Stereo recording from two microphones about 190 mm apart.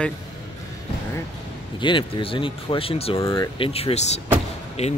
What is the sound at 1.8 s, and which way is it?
Speech, 25° left (ahead or behind).